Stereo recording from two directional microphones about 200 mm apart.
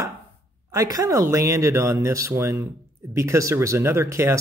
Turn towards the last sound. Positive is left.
turn(degrees=-15)  # may be behind; listen again after turning